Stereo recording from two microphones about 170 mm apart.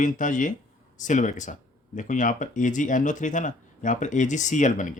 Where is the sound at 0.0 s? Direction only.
50° left (ahead or behind).